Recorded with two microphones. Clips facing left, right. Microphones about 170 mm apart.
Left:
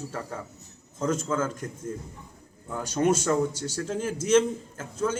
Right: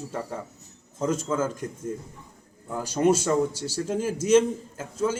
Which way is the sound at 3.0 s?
30° right (ahead or behind).